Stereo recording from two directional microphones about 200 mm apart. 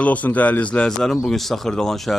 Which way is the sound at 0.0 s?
5° left (ahead or behind).